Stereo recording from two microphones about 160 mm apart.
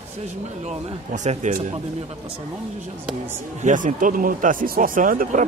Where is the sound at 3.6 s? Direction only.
55° right (ahead or behind).